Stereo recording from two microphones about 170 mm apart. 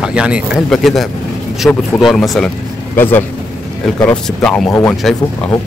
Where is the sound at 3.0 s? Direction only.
10° left (ahead or behind).